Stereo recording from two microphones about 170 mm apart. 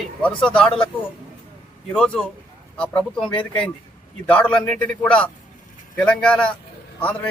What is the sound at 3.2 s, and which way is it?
Speech, 30° left (ahead or behind).